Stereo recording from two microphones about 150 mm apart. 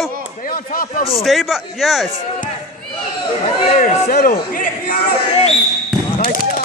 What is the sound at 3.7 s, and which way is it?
Speech, 70° left (ahead or behind).